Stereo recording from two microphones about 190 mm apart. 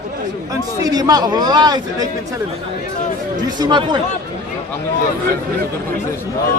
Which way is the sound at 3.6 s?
25° right (ahead or behind).